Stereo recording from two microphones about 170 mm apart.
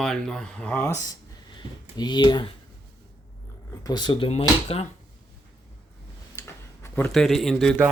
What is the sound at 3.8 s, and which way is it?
Speech, 25° left (ahead or behind).